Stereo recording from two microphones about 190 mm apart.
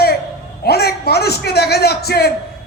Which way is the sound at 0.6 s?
55° left (ahead or behind).